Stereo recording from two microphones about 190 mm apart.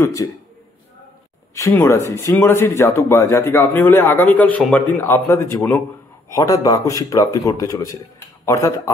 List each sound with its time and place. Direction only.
0.0 s speech: 15° left (ahead or behind)
1.5 s speech: 15° left (ahead or behind)